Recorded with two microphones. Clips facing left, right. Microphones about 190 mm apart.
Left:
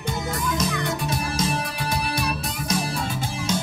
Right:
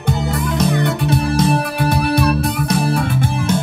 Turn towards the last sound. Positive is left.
turn(degrees=-60)  # may be behind; listen again after turning